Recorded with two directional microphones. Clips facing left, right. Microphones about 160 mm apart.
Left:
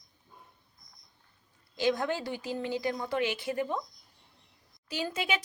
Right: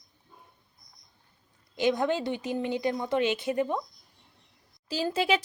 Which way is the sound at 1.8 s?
20° right (ahead or behind).